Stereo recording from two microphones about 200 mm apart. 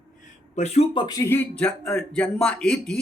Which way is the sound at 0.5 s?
35° left (ahead or behind).